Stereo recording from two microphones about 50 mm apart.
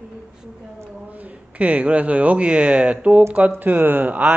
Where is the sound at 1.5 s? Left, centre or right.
Right.